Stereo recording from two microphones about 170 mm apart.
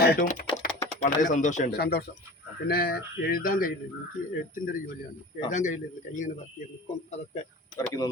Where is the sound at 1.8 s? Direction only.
65° left (ahead or behind).